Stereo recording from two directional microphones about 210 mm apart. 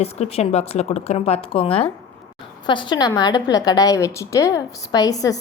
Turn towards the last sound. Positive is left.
turn(degrees=15)  # may be behind; listen again after turning